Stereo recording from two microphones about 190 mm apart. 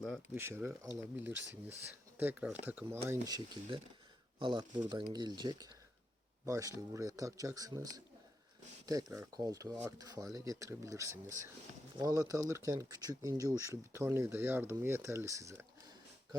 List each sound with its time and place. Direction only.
0.3 s speech: 10° right (ahead or behind)
3.1 s speech: 20° right (ahead or behind)